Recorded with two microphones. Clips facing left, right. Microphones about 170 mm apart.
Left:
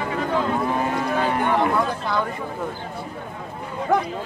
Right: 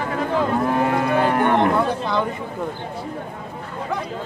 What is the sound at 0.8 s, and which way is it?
Cattle, 60° right (ahead or behind).